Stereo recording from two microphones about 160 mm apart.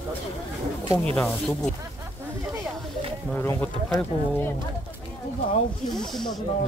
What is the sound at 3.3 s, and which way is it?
Speech, 10° left (ahead or behind).